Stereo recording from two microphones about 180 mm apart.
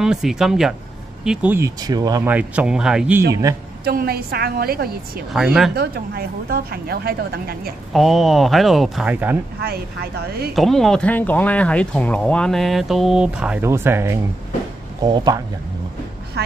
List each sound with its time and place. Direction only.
0.0 s speech: 5° right (ahead or behind); by 2.3 s 20° right (ahead or behind)
2.3 s speech: 5° right (ahead or behind)
3.3 s speech: 20° right (ahead or behind)
3.8 s a woman's voice: 60° right (ahead or behind)
5.3 s speech: 5° right (ahead or behind)
5.8 s a woman's voice: 60° right (ahead or behind)
7.9 s speech: centre (ahead or behind)
9.6 s a woman's voice: 60° right (ahead or behind)
10.5 s speech: centre (ahead or behind); by 15.4 s 25° right (ahead or behind)
16.4 s speech: 65° right (ahead or behind)